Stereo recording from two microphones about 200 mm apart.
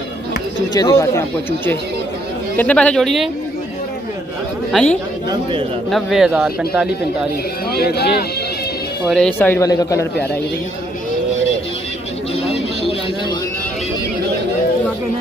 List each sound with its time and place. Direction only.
0.7 s speech: 20° left (ahead or behind)
2.5 s speech: 5° left (ahead or behind)
4.7 s speech: centre (ahead or behind)
5.3 s a man's voice: 25° right (ahead or behind)
5.9 s speech: centre (ahead or behind)
7.7 s speech: 50° left (ahead or behind)
9.1 s speech: 5° left (ahead or behind)